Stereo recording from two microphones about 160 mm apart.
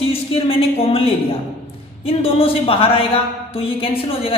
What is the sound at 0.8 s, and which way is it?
A woman's voice, 35° left (ahead or behind).